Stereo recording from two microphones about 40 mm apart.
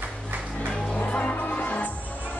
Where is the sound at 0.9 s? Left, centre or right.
Left.